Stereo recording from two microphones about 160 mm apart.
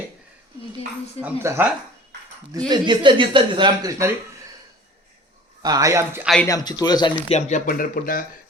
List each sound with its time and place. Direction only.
1.2 s speech: 15° right (ahead or behind)
2.6 s speech: 30° right (ahead or behind)
5.6 s speech: 20° right (ahead or behind)
6.2 s speech: 5° left (ahead or behind)
6.5 s a man's voice: 25° left (ahead or behind)
7.3 s speech: 45° left (ahead or behind); by 8.2 s 60° left (ahead or behind)